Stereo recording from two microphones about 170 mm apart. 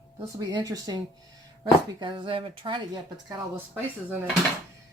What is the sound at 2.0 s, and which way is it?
Speech, 30° right (ahead or behind).